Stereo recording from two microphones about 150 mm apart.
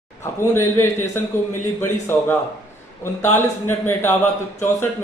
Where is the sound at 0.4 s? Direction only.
15° left (ahead or behind).